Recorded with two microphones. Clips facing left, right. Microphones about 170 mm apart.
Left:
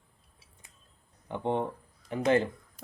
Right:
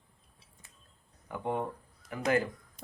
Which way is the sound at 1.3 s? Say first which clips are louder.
Left 3 dB; 25° left (ahead or behind).